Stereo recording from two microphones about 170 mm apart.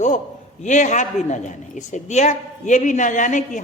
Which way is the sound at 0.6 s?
45° left (ahead or behind).